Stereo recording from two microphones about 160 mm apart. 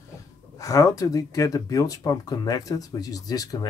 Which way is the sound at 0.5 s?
20° left (ahead or behind).